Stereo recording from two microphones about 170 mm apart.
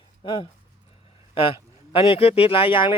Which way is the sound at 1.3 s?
30° left (ahead or behind).